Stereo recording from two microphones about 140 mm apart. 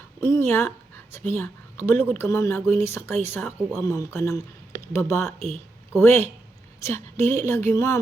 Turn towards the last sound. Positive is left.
turn(degrees=20)  # may be behind; listen again after turning